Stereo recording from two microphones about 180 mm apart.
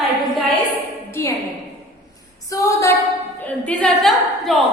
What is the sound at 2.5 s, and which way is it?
Female singing, 15° left (ahead or behind).